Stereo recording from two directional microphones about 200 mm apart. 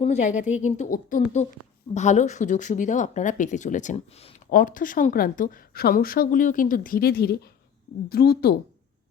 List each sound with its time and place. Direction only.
0.0 s speech: 35° left (ahead or behind); by 8.5 s 50° left (ahead or behind)